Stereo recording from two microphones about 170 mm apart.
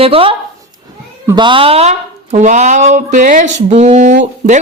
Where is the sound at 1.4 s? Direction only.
30° right (ahead or behind).